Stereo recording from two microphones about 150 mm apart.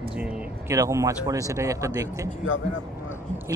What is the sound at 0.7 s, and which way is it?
Speech, 20° right (ahead or behind).